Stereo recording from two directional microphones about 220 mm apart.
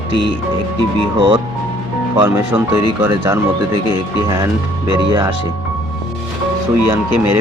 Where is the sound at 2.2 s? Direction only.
10° right (ahead or behind).